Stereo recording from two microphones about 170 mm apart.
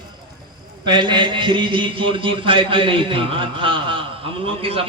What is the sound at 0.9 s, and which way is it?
A man's voice, 25° right (ahead or behind).